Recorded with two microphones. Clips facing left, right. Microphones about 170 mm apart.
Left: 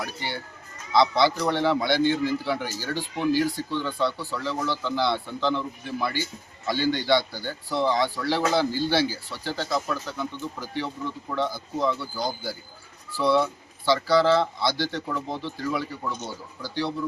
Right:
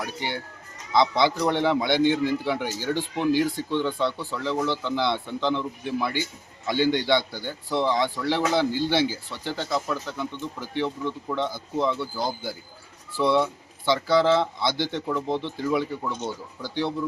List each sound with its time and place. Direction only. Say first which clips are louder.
0.0 s a man's voice: right 2 dB; 15° right (ahead or behind)